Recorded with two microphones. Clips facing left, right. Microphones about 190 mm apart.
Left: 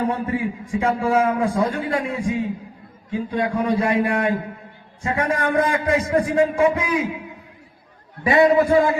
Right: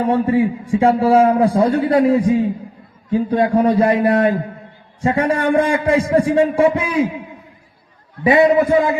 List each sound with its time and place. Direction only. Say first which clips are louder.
0.0 s a man's voice: right 7 dB; 30° right (ahead or behind)
8.2 s a man's voice: right 3 dB; 20° right (ahead or behind)